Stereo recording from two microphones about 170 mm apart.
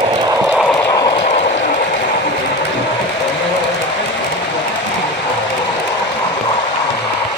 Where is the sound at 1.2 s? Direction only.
40° left (ahead or behind).